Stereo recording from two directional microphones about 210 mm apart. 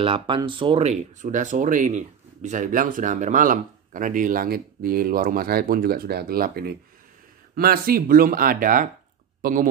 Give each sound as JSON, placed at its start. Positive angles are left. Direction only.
{"t": 0.0, "sound": "speech", "side_deg": -25}